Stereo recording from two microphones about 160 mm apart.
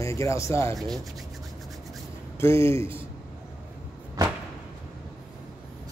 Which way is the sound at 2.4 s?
15° left (ahead or behind).